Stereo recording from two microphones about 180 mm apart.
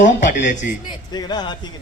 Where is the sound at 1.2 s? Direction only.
25° left (ahead or behind).